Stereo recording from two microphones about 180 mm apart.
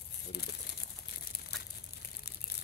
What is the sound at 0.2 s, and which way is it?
Crumpling, 65° left (ahead or behind).